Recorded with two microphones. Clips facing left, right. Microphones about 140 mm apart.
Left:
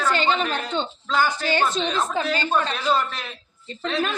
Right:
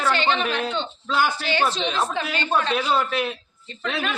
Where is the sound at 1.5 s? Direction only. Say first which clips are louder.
Left 1 dB; 45° left (ahead or behind).